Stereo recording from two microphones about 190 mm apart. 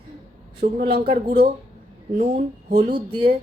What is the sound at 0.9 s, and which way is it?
Speech, 35° right (ahead or behind).